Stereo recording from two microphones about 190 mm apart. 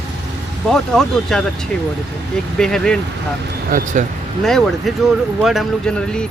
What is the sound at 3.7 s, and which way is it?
Speech, 40° right (ahead or behind).